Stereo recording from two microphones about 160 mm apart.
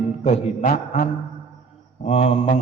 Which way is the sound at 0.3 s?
45° left (ahead or behind).